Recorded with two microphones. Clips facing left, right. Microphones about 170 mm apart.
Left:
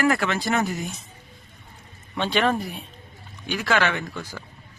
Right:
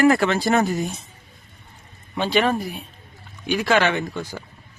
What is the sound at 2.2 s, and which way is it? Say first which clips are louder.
Speech: right 2 dB; 5° right (ahead or behind).